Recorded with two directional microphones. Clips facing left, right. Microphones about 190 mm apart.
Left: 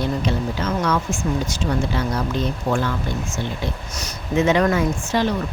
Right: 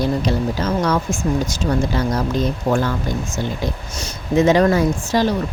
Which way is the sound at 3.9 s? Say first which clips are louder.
Right 4 dB; 35° right (ahead or behind).